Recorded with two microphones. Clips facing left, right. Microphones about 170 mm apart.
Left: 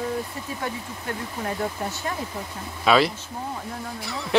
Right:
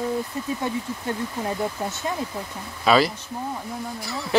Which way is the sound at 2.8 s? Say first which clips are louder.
Right 1 dB; centre (ahead or behind).